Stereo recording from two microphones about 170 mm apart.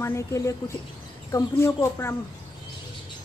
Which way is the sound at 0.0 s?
15° left (ahead or behind).